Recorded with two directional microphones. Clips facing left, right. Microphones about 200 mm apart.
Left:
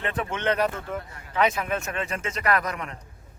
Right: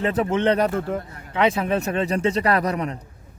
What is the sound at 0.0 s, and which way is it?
Speech, 35° right (ahead or behind).